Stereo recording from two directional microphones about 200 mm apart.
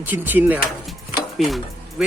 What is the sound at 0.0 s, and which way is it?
Speech, 10° right (ahead or behind).